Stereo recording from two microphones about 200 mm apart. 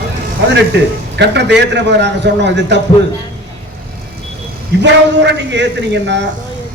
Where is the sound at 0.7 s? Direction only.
60° right (ahead or behind).